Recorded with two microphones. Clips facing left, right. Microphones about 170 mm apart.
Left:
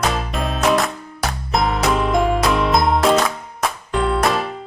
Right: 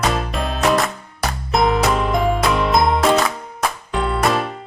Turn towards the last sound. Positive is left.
turn(degrees=0)  # may be behind; listen again after turning